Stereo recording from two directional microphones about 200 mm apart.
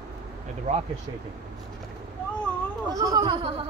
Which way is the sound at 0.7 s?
40° right (ahead or behind).